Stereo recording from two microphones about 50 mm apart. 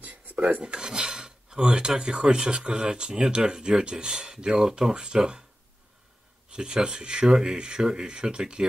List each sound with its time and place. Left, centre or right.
0.0 s filing: right
0.7 s filing: centre
6.5 s filing: centre